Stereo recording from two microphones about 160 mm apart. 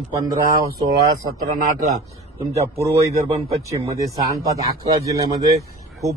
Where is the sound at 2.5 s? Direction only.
20° right (ahead or behind).